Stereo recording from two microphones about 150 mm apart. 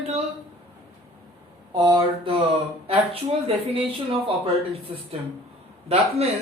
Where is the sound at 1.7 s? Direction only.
30° right (ahead or behind).